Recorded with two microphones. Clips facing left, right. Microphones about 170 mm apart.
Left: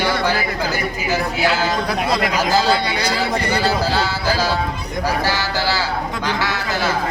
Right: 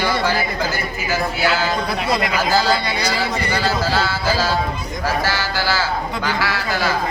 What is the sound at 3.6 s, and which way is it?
A man's voice, 15° left (ahead or behind).